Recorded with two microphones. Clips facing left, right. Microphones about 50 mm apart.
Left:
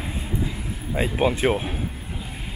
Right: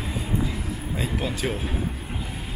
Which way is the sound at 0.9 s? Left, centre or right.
Left.